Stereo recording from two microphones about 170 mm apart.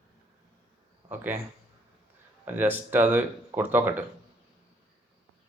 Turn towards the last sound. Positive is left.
turn(degrees=-10)  # may be behind; listen again after turning